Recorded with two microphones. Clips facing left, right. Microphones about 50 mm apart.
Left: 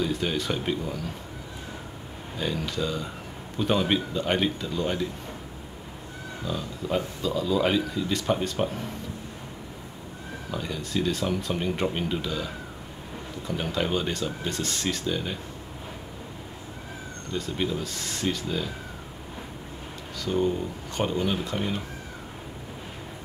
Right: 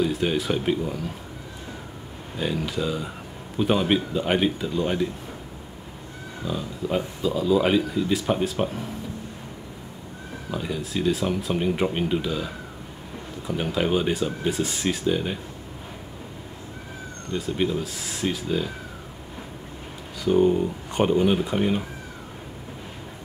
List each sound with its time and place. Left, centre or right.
0.0 s speech: centre
2.3 s speech: centre
6.4 s speech: centre
10.5 s speech: centre
17.3 s speech: centre
20.2 s speech: centre